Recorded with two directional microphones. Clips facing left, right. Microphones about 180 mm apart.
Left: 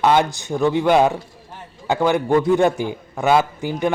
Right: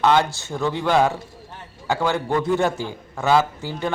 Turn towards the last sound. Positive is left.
turn(degrees=15)  # may be behind; listen again after turning